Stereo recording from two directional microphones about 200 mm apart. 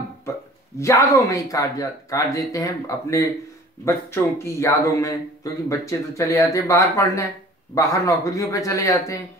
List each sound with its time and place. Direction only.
0.7 s speech: 15° left (ahead or behind)